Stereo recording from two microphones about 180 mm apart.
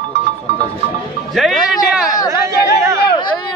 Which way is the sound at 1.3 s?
Centre (ahead or behind).